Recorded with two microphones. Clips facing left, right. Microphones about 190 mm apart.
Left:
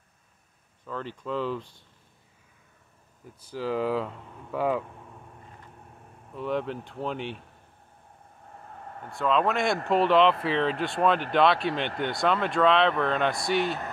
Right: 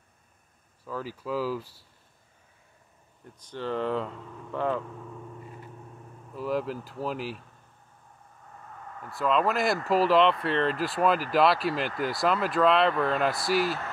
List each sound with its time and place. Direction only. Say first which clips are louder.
0.8 s speech: even; 5° right (ahead or behind)
3.3 s speech: left 2 dB; 5° left (ahead or behind)
6.3 s speech: even; centre (ahead or behind)
8.7 s vehicle: left 1 dB; 30° left (ahead or behind)
9.1 s speech: even; centre (ahead or behind)